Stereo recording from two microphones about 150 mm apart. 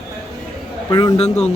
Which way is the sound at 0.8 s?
25° left (ahead or behind).